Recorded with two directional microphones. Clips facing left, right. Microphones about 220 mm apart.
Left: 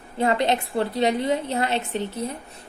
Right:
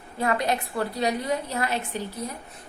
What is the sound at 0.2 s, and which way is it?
A woman's voice, 25° left (ahead or behind).